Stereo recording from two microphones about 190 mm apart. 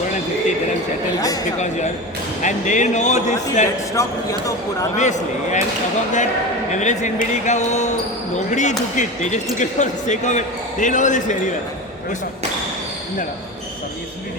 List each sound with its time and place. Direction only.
1.2 s speech: 20° left (ahead or behind)
2.4 s speech: 40° left (ahead or behind)
3.9 s speech: 15° left (ahead or behind)
4.9 s speech: 40° left (ahead or behind)
6.7 s speech: 40° left (ahead or behind)